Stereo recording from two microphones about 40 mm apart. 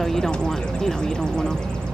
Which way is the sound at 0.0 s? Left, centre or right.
Centre.